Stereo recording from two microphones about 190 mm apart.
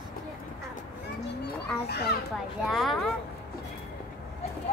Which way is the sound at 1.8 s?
60° left (ahead or behind).